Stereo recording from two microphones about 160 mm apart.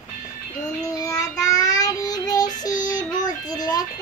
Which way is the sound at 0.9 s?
20° left (ahead or behind).